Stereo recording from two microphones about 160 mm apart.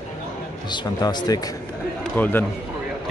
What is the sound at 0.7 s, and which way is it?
Speech, 25° left (ahead or behind).